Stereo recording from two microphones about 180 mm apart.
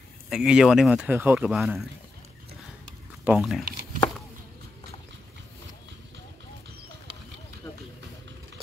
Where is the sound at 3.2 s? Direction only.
5° right (ahead or behind).